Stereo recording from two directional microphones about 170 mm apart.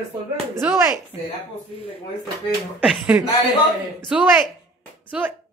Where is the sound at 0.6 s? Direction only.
15° right (ahead or behind).